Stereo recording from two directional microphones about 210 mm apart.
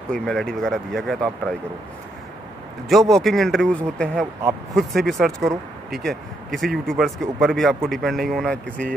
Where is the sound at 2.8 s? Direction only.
Centre (ahead or behind).